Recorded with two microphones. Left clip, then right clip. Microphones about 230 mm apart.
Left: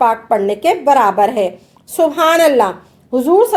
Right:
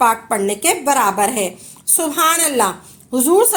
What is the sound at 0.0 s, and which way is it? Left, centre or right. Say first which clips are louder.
A woman's voice: left 3 dB; right.